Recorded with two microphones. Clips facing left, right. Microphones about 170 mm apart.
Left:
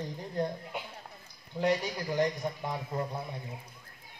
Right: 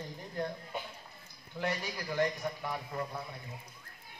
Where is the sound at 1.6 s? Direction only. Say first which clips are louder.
Left 7 dB; 20° left (ahead or behind).